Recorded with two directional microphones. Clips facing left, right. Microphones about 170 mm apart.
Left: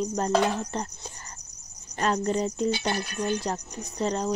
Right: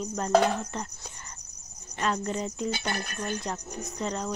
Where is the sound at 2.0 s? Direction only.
35° left (ahead or behind).